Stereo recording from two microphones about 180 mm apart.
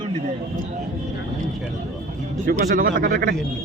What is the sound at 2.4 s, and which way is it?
Speech, 45° right (ahead or behind).